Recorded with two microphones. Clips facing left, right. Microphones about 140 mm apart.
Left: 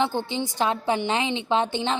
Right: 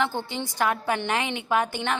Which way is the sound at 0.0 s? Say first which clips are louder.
Left 3 dB; 20° left (ahead or behind).